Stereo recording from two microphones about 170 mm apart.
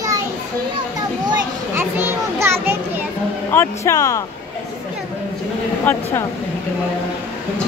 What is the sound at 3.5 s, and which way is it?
Speech, 15° left (ahead or behind).